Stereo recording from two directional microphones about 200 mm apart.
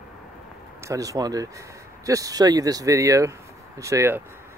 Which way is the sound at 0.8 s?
15° right (ahead or behind).